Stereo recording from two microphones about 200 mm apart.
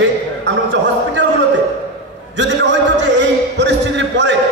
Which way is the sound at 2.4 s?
65° right (ahead or behind).